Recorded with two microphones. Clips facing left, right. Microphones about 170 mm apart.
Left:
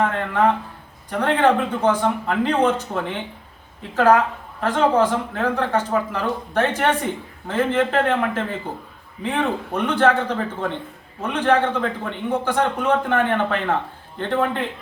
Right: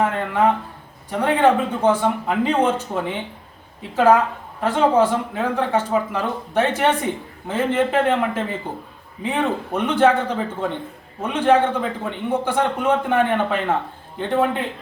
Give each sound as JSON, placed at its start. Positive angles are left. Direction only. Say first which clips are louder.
{"t": 0.0, "sound": "a man's voice", "louder": "even", "side_deg": -10}